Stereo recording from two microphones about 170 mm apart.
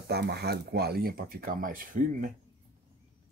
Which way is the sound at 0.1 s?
75° right (ahead or behind).